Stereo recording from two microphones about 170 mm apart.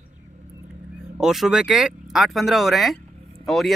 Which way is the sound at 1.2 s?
Centre (ahead or behind).